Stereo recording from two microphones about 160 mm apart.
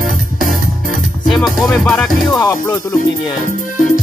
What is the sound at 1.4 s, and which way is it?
Speech, centre (ahead or behind).